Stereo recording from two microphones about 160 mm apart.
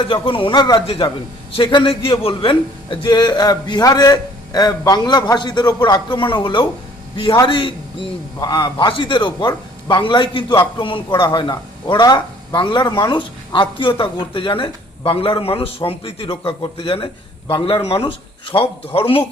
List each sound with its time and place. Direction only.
0.0 s a man's voice: 35° left (ahead or behind)